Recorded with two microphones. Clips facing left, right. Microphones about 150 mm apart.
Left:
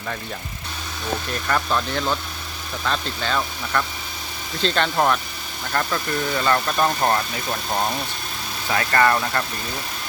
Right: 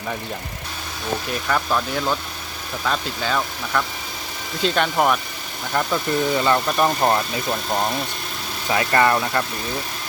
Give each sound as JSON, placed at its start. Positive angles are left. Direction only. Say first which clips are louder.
{"t": 1.3, "sound": "speech", "louder": "right 1 dB", "side_deg": -5}
{"t": 8.7, "sound": "speech", "louder": "right 1 dB", "side_deg": -20}